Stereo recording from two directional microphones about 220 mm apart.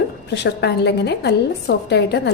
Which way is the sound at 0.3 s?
50° left (ahead or behind).